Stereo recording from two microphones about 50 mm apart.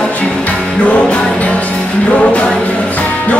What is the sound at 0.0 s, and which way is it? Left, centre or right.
Music, left.